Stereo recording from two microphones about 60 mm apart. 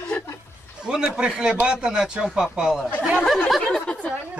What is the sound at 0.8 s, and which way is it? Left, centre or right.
A man's voice, centre.